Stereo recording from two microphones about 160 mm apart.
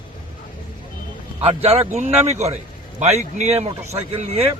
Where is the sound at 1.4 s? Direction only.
40° right (ahead or behind).